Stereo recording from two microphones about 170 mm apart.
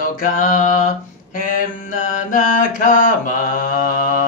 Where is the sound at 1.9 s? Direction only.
50° left (ahead or behind).